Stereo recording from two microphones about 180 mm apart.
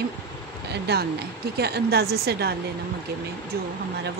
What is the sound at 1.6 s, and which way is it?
Speech, 65° right (ahead or behind).